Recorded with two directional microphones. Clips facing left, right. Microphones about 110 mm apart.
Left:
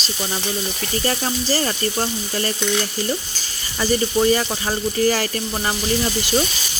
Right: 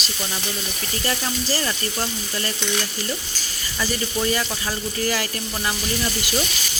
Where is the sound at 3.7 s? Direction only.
35° left (ahead or behind).